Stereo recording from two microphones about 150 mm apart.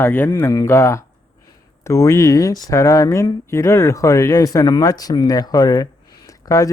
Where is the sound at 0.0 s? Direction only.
15° left (ahead or behind).